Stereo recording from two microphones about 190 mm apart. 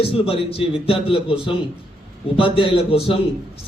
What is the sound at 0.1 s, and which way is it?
A man's voice, 30° left (ahead or behind).